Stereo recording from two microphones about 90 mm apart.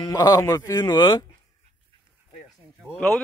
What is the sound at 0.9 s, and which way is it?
Speech, 55° left (ahead or behind).